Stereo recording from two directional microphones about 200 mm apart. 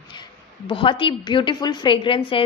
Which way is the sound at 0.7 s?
25° left (ahead or behind).